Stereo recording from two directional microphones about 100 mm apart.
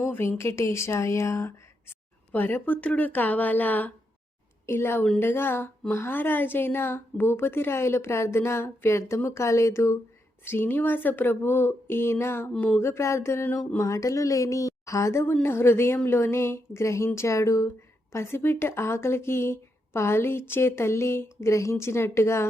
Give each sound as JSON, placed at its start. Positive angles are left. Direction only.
{"t": 0.0, "sound": "a woman's voice", "side_deg": 20}